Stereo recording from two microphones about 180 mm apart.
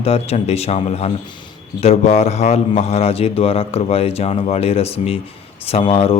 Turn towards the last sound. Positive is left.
turn(degrees=30)  # may be behind; listen again after turning